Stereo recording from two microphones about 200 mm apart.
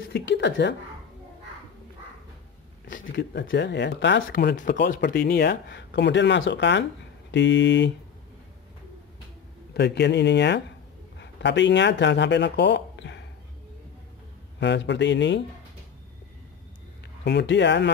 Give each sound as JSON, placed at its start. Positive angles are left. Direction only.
{"t": 0.1, "sound": "speech", "side_deg": 60}
{"t": 3.1, "sound": "speech", "side_deg": 60}
{"t": 9.8, "sound": "speech", "side_deg": 60}
{"t": 14.6, "sound": "speech", "side_deg": 60}
{"t": 17.2, "sound": "speech", "side_deg": 60}